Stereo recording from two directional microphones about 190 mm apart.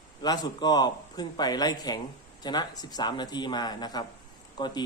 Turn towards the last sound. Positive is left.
turn(degrees=20)  # may be behind; listen again after turning